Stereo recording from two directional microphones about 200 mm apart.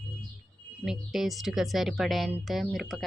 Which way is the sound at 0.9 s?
Centre (ahead or behind).